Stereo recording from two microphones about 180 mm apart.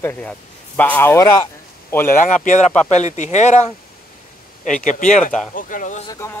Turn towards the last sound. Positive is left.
turn(degrees=15)  # may be behind; listen again after turning